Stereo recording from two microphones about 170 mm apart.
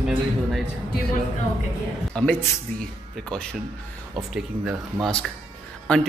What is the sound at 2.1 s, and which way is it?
A man's voice, 5° left (ahead or behind).